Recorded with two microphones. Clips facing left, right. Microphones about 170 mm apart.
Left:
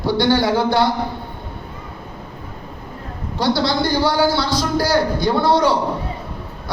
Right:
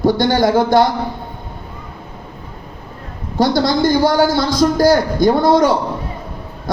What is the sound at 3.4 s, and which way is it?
A man's voice, 45° right (ahead or behind).